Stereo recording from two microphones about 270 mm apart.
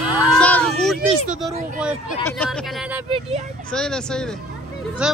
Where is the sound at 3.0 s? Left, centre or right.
Centre.